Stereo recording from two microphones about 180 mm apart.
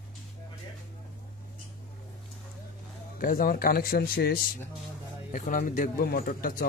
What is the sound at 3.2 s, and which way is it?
A man's voice, 50° left (ahead or behind).